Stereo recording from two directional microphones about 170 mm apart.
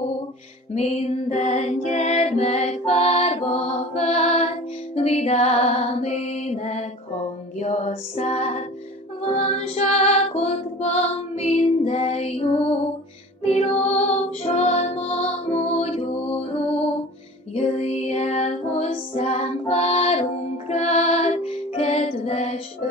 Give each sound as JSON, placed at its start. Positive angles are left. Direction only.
{"t": 0.7, "sound": "music", "side_deg": 40}